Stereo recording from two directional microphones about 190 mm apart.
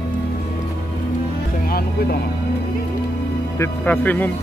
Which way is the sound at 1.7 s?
55° left (ahead or behind).